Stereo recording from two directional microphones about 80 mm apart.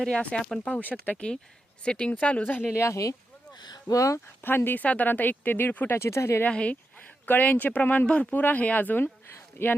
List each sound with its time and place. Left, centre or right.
0.0 s speech: centre
0.8 s speech: left
1.1 s speech: centre
2.7 s speech: left
3.6 s a sound: left
3.9 s speech: left
4.4 s speech: left
6.4 s speech: centre